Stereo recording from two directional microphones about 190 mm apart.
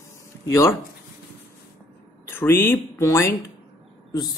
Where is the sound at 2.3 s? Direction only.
10° left (ahead or behind).